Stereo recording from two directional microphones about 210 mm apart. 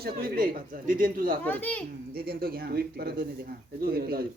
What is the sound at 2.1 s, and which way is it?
Speech, 45° right (ahead or behind).